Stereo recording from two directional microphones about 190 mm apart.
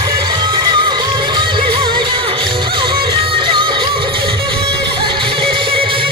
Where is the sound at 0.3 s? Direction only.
25° right (ahead or behind).